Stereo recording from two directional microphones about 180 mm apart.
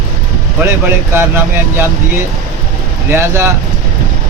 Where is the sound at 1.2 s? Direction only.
10° right (ahead or behind).